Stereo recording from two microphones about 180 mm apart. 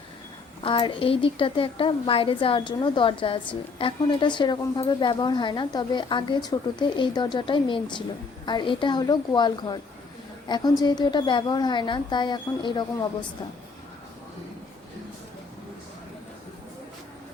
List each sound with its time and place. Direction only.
0.6 s a woman's voice: 30° left (ahead or behind)